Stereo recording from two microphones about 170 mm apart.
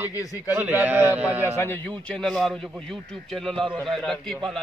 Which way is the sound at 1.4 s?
15° left (ahead or behind).